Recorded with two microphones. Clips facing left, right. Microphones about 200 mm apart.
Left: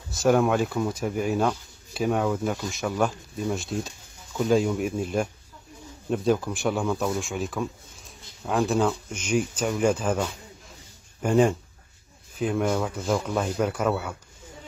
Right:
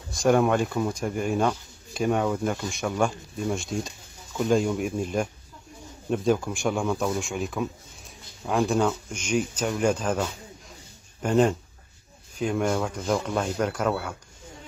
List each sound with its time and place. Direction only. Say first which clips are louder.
0.1 s speech: even; centre (ahead or behind)
11.2 s speech: left 1 dB; 5° left (ahead or behind)